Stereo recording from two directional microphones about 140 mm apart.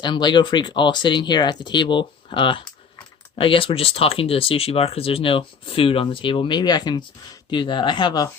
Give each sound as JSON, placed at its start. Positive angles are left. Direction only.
{"t": 0.0, "sound": "speech", "side_deg": 35}